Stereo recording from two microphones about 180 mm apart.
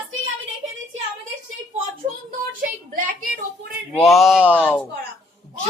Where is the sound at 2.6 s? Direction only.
50° right (ahead or behind).